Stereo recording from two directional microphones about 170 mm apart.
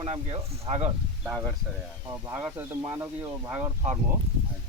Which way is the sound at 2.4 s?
15° right (ahead or behind).